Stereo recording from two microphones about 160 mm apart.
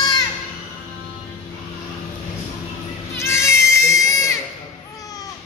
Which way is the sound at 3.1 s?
15° left (ahead or behind).